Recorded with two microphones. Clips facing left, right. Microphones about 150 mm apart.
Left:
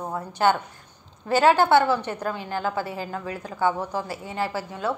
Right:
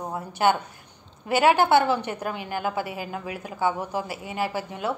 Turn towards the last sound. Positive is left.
turn(degrees=-15)  # may be behind; listen again after turning